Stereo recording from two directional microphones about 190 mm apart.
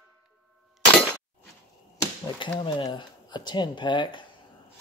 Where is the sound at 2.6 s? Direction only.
25° left (ahead or behind).